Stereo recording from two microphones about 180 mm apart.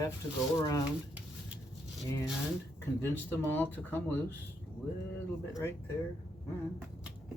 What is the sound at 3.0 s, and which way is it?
Speech, 10° left (ahead or behind).